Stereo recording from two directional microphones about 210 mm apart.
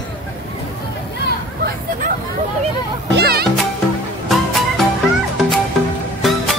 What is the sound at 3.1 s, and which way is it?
Music, 50° right (ahead or behind).